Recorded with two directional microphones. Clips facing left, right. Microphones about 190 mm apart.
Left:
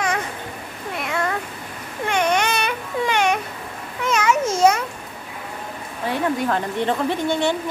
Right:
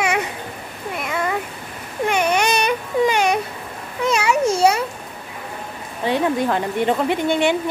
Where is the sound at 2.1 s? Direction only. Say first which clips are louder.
Right 1 dB; 10° right (ahead or behind).